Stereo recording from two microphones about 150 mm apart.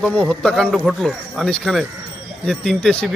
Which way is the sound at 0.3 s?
5° left (ahead or behind).